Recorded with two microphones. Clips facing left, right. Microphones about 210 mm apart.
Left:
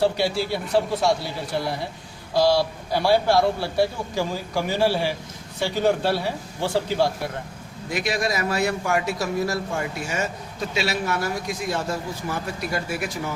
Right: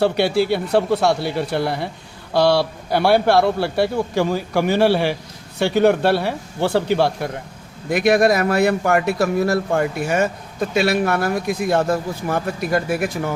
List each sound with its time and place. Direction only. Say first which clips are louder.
0.0 s a man's voice: right 5 dB; 65° right (ahead or behind)